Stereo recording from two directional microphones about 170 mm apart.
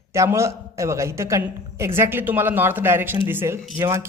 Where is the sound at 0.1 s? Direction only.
15° right (ahead or behind).